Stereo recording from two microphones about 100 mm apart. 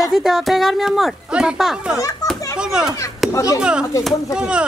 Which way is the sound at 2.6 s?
5° right (ahead or behind).